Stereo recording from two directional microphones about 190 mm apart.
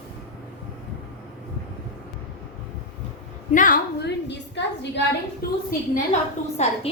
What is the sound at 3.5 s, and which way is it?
Speech, 45° left (ahead or behind).